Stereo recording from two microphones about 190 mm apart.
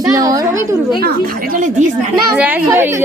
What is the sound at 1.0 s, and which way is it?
Speech, 55° right (ahead or behind).